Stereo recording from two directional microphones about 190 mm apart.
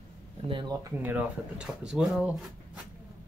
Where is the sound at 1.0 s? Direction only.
10° right (ahead or behind).